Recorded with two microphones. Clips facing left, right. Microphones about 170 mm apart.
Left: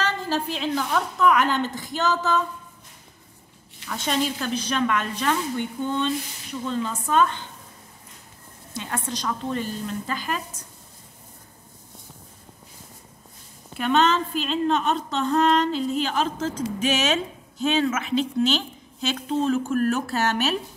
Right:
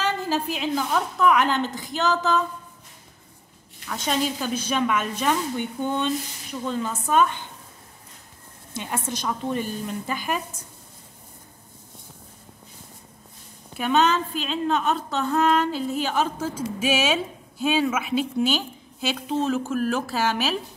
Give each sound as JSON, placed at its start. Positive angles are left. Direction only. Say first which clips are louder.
{"t": 0.0, "sound": "a woman's voice", "louder": "right 1 dB", "side_deg": -5}
{"t": 3.8, "sound": "a woman's voice", "louder": "even", "side_deg": 0}
{"t": 8.7, "sound": "a woman's voice", "louder": "right 1 dB", "side_deg": -20}
{"t": 13.7, "sound": "a woman's voice", "louder": "even", "side_deg": -5}